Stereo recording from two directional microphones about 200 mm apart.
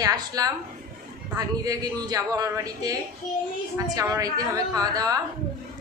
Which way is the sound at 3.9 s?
15° right (ahead or behind).